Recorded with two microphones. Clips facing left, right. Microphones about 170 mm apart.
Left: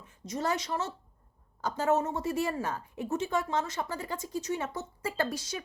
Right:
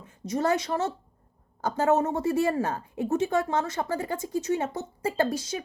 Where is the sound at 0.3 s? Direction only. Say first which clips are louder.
Right 6 dB; 55° right (ahead or behind).